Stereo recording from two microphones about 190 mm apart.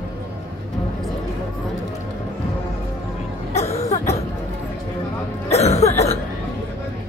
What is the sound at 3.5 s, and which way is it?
Cough, 35° left (ahead or behind).